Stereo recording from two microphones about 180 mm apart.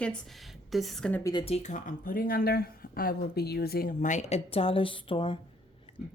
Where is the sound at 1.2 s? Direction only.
25° left (ahead or behind).